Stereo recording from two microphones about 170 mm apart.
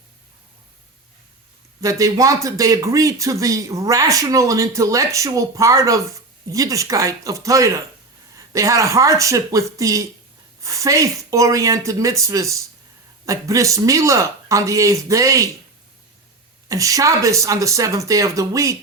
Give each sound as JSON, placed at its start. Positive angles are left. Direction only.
{"t": 1.8, "sound": "speech", "side_deg": -20}
{"t": 16.6, "sound": "speech", "side_deg": -20}